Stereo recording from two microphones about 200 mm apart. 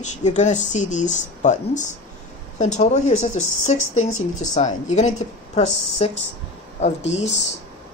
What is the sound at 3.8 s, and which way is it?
Speech, 90° left.